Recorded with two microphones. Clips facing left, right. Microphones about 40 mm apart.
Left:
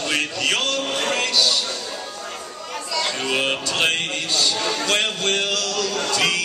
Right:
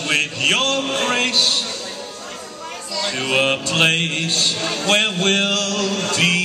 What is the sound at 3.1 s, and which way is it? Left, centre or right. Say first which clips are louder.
Speech: right 7 dB; right.